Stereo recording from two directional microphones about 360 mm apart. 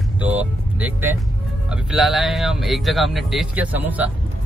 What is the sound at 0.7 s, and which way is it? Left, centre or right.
Speech, centre.